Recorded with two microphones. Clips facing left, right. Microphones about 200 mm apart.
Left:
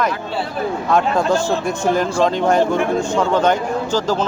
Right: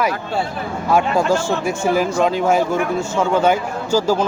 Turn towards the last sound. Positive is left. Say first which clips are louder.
# right 1 dB
turn(degrees=-10)  # may be behind; listen again after turning